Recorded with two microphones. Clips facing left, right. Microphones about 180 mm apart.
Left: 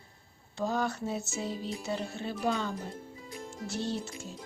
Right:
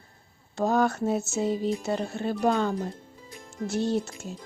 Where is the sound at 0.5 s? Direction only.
50° right (ahead or behind).